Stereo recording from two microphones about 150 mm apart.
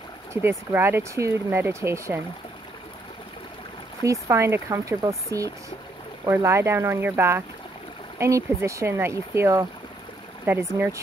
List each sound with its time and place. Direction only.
0.3 s speech: 15° right (ahead or behind)
4.0 s speech: 20° right (ahead or behind)